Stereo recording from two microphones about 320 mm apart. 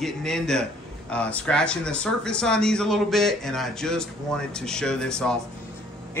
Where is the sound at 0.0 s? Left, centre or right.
Centre.